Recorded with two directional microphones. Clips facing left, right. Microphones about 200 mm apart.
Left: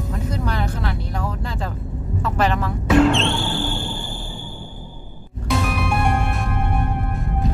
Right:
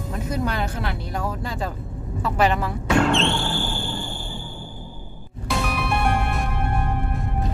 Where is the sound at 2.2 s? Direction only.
10° right (ahead or behind).